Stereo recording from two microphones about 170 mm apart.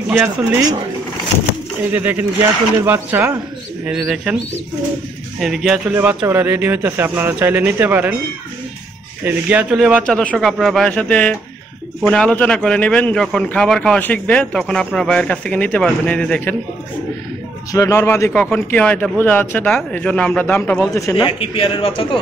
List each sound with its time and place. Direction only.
0.1 s speech: 20° right (ahead or behind)
1.9 s a man's voice: 10° right (ahead or behind)
5.4 s speech: centre (ahead or behind)
9.2 s speech: 10° right (ahead or behind)
10.0 s a man's voice: 5° left (ahead or behind)
17.7 s a man's voice: 15° left (ahead or behind)
21.3 s a man's voice: 30° left (ahead or behind)